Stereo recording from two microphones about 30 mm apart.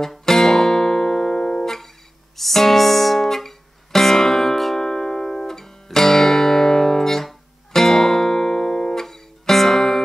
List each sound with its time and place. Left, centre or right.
0.2 s music: centre